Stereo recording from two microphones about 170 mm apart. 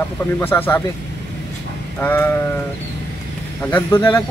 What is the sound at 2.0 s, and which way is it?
Speech, 10° left (ahead or behind).